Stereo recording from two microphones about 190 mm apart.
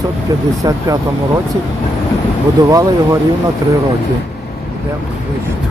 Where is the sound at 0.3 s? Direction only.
15° right (ahead or behind).